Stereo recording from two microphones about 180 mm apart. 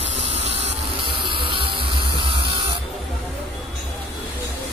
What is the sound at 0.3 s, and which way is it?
Music, 35° right (ahead or behind).